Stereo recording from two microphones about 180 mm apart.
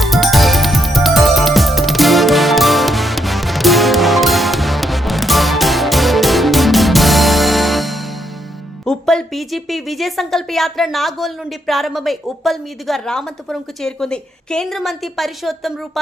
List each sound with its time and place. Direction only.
0.0 s music: centre (ahead or behind)
8.8 s a woman's voice: 5° left (ahead or behind)